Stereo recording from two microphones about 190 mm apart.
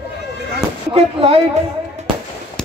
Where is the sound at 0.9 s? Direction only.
30° right (ahead or behind).